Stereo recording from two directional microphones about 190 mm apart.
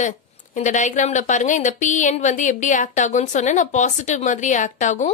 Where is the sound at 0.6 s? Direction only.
40° left (ahead or behind).